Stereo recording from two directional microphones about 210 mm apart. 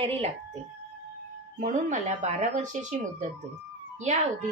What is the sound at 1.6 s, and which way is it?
A woman's voice, 35° right (ahead or behind).